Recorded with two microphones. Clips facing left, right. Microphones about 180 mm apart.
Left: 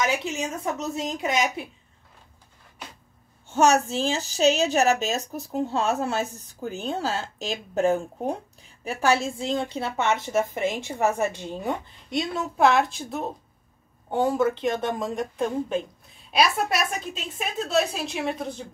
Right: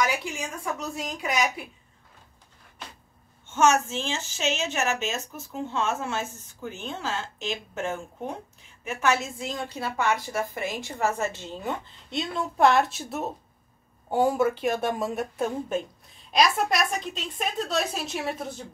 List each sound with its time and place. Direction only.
0.0 s speech: 25° left (ahead or behind)
3.4 s a woman's voice: 35° left (ahead or behind); by 15.8 s 5° right (ahead or behind)
16.3 s a woman's voice: 5° left (ahead or behind)